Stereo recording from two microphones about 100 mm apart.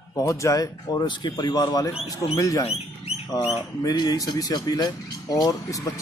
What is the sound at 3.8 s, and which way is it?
Speech, 40° left (ahead or behind).